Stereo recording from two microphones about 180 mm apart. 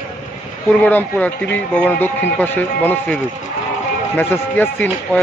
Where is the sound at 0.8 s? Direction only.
10° left (ahead or behind).